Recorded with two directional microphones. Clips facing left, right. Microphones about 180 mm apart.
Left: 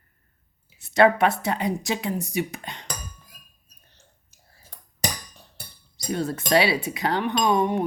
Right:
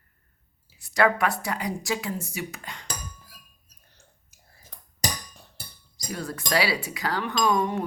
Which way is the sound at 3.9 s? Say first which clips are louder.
Right 1 dB; 15° right (ahead or behind).